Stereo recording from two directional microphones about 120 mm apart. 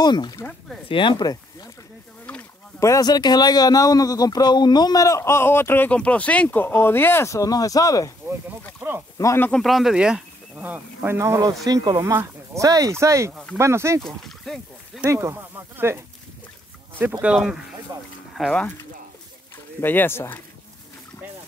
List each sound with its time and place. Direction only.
0.0 s speech: 35° left (ahead or behind)
2.8 s a man's voice: 30° left (ahead or behind)
8.8 s speech: 20° right (ahead or behind)
9.2 s a man's voice: 25° left (ahead or behind)
9.5 s speech: centre (ahead or behind); by 12.1 s 30° right (ahead or behind)
12.1 s speech: 20° right (ahead or behind)
12.6 s speech: 30° right (ahead or behind)
14.0 s speech: 5° left (ahead or behind)
15.0 s speech: 20° right (ahead or behind)
17.0 s speech: 10° right (ahead or behind)
17.9 s speech: 30° right (ahead or behind)
18.4 s speech: 10° left (ahead or behind)
19.8 s speech: 15° left (ahead or behind)